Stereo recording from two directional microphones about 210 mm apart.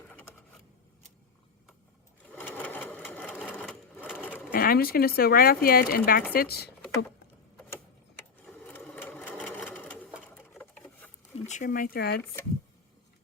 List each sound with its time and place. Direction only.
2.2 s sewing machine: 10° left (ahead or behind)
4.5 s speech: 45° left (ahead or behind)
8.6 s sewing machine: 10° left (ahead or behind)
11.3 s speech: 35° left (ahead or behind); by 12.2 s 50° left (ahead or behind)